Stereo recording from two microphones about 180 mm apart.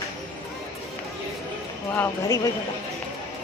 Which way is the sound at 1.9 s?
10° left (ahead or behind).